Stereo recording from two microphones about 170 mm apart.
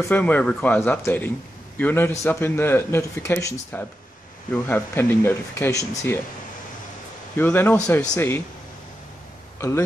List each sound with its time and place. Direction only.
0.0 s speech: 10° left (ahead or behind)
7.3 s speech: 10° left (ahead or behind)
9.6 s speech: 15° left (ahead or behind)